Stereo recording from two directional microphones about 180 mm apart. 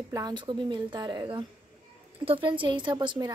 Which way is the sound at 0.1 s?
20° right (ahead or behind).